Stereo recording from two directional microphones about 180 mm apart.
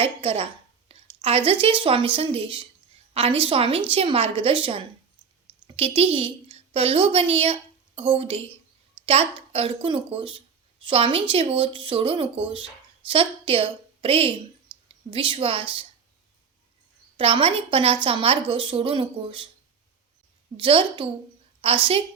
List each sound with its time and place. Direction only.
0.0 s a woman's voice: 30° right (ahead or behind)
17.2 s speech: 30° right (ahead or behind)
20.6 s a woman's voice: 30° right (ahead or behind)